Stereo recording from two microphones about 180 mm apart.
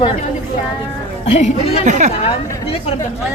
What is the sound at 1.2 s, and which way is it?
Speech, 40° left (ahead or behind).